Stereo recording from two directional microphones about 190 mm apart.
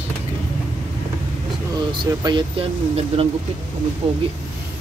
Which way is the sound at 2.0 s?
25° right (ahead or behind).